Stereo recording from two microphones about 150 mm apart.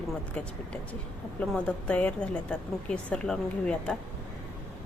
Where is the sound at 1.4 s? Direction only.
5° left (ahead or behind).